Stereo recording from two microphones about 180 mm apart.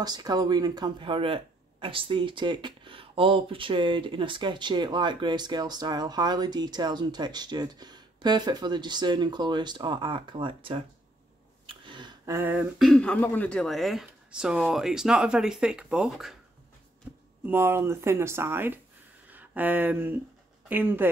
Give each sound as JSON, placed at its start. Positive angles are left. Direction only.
{"t": 0.0, "sound": "speech", "side_deg": -20}
{"t": 11.6, "sound": "a sound", "side_deg": -25}
{"t": 12.4, "sound": "speech", "side_deg": -10}
{"t": 12.7, "sound": "speech", "side_deg": 0}
{"t": 17.1, "sound": "a sound", "side_deg": -10}
{"t": 17.5, "sound": "speech", "side_deg": -15}